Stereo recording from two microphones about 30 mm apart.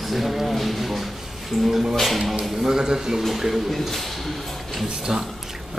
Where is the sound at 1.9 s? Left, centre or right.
Centre.